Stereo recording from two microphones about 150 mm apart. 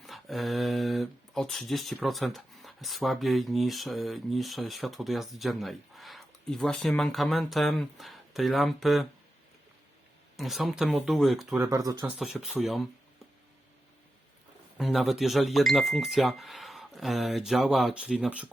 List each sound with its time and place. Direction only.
0.0 s speech: centre (ahead or behind)
10.3 s speech: centre (ahead or behind)
11.5 s speech: 15° right (ahead or behind)
12.2 s speech: 5° right (ahead or behind)
14.8 s speech: centre (ahead or behind)